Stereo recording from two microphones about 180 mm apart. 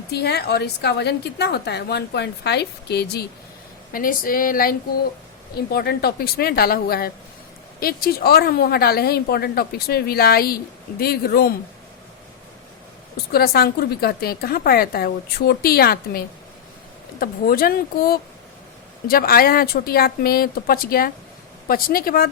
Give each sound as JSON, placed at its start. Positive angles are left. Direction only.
{"t": 0.1, "sound": "a woman's voice", "side_deg": 65}
{"t": 3.9, "sound": "speech", "side_deg": 50}
{"t": 5.7, "sound": "a woman's voice", "side_deg": 60}
{"t": 13.3, "sound": "a woman's voice", "side_deg": 60}